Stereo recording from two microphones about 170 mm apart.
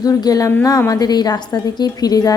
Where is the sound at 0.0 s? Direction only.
20° left (ahead or behind).